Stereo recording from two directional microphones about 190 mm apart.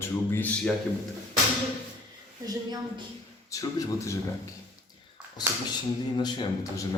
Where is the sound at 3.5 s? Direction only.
20° left (ahead or behind).